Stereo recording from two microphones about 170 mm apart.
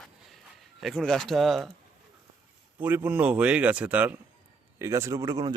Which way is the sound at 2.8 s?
10° right (ahead or behind).